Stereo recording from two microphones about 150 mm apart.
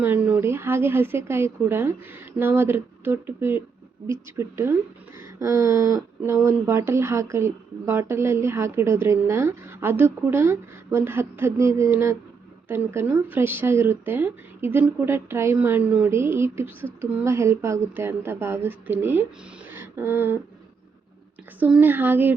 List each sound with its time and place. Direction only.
0.0 s speech: 10° right (ahead or behind)
19.7 s a sound: 15° right (ahead or behind)
21.6 s speech: 10° right (ahead or behind)